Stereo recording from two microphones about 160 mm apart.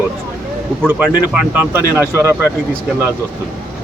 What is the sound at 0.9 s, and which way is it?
Speech, 10° right (ahead or behind).